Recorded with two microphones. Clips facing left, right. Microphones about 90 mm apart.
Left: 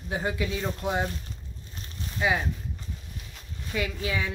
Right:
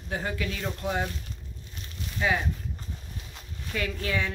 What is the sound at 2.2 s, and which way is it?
Speech, 15° left (ahead or behind).